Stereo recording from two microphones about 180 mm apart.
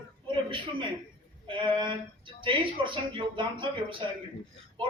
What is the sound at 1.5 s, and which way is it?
Speech, 25° right (ahead or behind).